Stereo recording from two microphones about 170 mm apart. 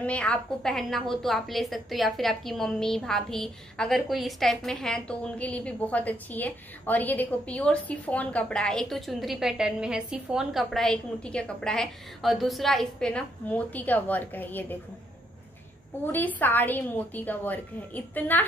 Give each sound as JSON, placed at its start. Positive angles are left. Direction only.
{"t": 0.0, "sound": "a woman's voice", "side_deg": 5}
{"t": 16.1, "sound": "a woman's voice", "side_deg": 10}